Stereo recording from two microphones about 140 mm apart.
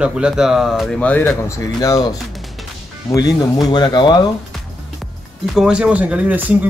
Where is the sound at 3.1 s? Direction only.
30° left (ahead or behind).